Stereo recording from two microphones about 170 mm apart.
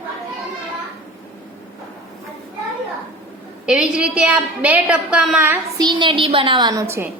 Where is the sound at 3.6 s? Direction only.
5° right (ahead or behind).